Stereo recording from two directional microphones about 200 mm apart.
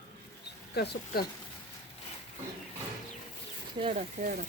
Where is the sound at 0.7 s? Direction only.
50° left (ahead or behind).